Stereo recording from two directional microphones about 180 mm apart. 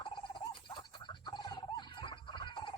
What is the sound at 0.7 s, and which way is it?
Fowl, 25° left (ahead or behind).